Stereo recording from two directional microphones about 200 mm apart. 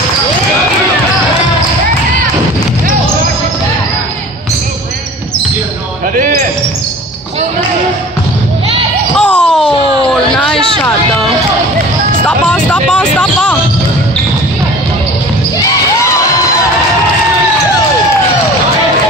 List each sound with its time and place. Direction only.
6.1 s basketball bounce: 45° right (ahead or behind)
9.1 s a sound: 5° left (ahead or behind)
12.4 s vehicle: 5° left (ahead or behind)